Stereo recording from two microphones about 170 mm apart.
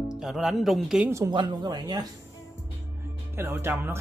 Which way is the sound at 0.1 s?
Centre (ahead or behind).